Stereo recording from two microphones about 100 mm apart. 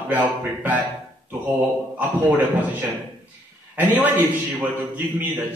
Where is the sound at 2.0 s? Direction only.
15° right (ahead or behind).